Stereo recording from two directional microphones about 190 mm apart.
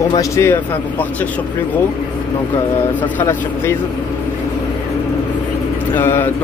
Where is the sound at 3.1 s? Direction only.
15° left (ahead or behind).